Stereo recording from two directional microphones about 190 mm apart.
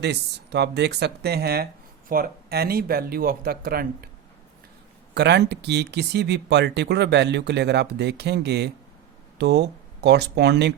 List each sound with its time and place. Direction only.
0.0 s speech: 60° right (ahead or behind)
5.1 s speech: 65° right (ahead or behind)